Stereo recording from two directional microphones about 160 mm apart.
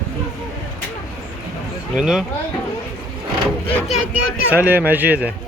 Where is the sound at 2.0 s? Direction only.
5° right (ahead or behind).